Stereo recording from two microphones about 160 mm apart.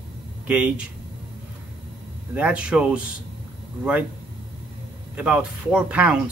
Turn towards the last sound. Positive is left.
turn(degrees=-10)  # may be behind; listen again after turning